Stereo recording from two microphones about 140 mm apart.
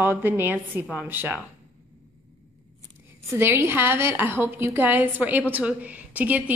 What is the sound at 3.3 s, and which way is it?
A woman's voice, 20° right (ahead or behind).